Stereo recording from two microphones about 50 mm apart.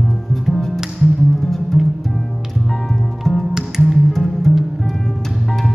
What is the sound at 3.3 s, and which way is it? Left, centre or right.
Music, centre.